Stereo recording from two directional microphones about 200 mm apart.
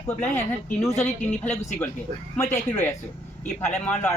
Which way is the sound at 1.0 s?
5° left (ahead or behind).